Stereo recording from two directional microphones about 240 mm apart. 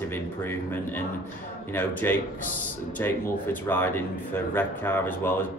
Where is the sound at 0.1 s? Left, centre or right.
Centre.